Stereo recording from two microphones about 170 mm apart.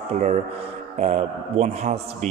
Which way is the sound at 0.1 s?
40° right (ahead or behind).